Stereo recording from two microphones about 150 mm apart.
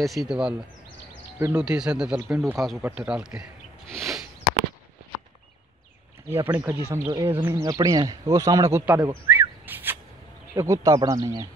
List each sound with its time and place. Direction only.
0.0 s speech: centre (ahead or behind)
3.9 s a sound: centre (ahead or behind)
6.3 s speech: 15° right (ahead or behind)
7.6 s speech: 25° right (ahead or behind)
8.8 s a sound: 20° right (ahead or behind)
10.5 s speech: 20° right (ahead or behind)